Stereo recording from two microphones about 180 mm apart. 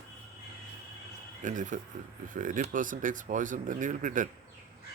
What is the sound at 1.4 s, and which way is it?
Speech, 45° right (ahead or behind).